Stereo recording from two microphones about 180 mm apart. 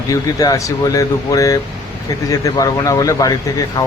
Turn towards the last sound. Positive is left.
turn(degrees=20)  # may be behind; listen again after turning